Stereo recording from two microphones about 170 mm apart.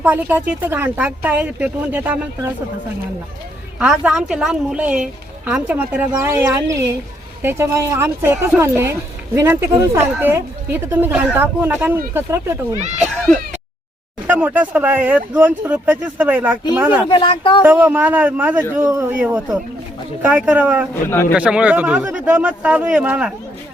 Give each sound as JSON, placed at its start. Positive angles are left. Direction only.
{"t": 0.0, "sound": "speech", "side_deg": -10}
{"t": 3.8, "sound": "a woman's voice", "side_deg": -5}
{"t": 14.3, "sound": "speech", "side_deg": -10}
{"t": 17.1, "sound": "speech", "side_deg": 25}
{"t": 17.6, "sound": "speech", "side_deg": -10}
{"t": 20.2, "sound": "speech", "side_deg": -10}
{"t": 20.9, "sound": "speech", "side_deg": 15}
{"t": 21.3, "sound": "speech", "side_deg": -5}